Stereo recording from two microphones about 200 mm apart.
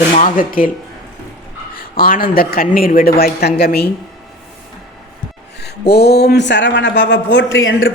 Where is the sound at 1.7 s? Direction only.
45° left (ahead or behind).